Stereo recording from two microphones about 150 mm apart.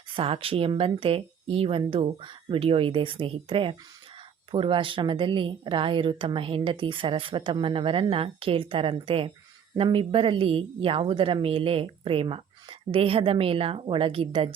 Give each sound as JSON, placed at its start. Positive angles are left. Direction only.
{"t": 0.1, "sound": "speech", "side_deg": -35}